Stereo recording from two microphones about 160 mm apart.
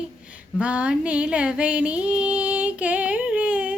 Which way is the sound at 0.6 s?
10° right (ahead or behind).